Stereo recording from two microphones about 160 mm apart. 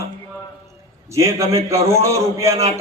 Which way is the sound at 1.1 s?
20° right (ahead or behind).